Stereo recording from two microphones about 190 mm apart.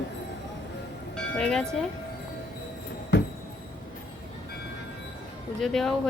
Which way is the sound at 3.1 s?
65° left (ahead or behind).